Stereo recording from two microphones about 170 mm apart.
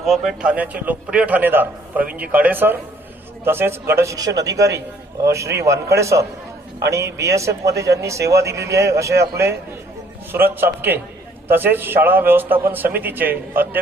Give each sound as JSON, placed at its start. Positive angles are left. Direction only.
{"t": 0.0, "sound": "a man's voice", "side_deg": 0}